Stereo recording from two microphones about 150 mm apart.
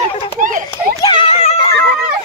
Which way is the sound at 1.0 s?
35° left (ahead or behind).